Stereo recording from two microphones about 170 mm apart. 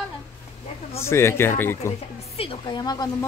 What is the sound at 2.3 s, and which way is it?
Speech, 25° left (ahead or behind).